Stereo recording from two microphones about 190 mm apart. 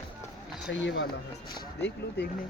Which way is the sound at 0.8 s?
75° left (ahead or behind).